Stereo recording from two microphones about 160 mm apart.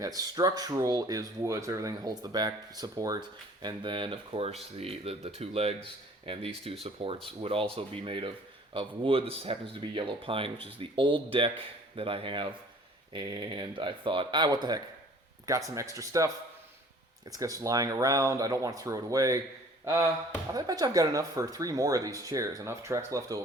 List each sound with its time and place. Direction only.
0.0 s speech: 20° right (ahead or behind)
17.3 s speech: 20° right (ahead or behind)